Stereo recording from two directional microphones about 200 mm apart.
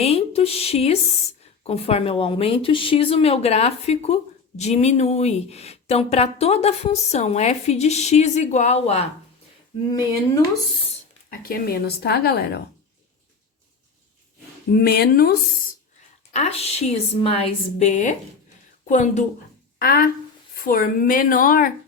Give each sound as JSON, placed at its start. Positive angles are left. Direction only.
{"t": 0.0, "sound": "a woman's voice", "side_deg": 30}
{"t": 11.3, "sound": "speech", "side_deg": 50}
{"t": 14.7, "sound": "speech", "side_deg": 50}
{"t": 16.3, "sound": "a woman's voice", "side_deg": 30}